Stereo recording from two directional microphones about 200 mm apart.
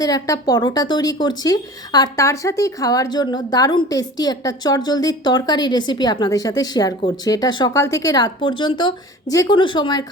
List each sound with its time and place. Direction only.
0.0 s a woman's voice: 20° left (ahead or behind)